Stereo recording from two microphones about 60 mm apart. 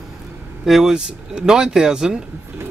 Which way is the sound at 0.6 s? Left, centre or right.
Centre.